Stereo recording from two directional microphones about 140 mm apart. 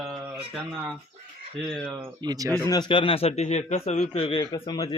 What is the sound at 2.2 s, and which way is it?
Speech, 25° right (ahead or behind).